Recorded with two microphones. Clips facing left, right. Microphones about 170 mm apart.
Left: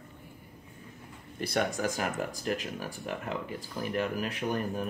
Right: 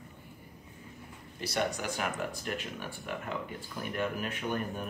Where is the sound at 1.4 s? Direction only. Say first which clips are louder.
Left 3 dB; 50° left (ahead or behind).